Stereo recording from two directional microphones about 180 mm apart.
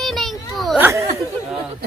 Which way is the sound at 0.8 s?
15° right (ahead or behind).